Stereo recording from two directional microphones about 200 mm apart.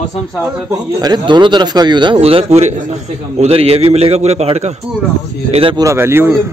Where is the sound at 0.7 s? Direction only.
20° right (ahead or behind).